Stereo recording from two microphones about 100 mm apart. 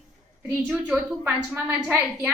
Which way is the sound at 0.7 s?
10° right (ahead or behind).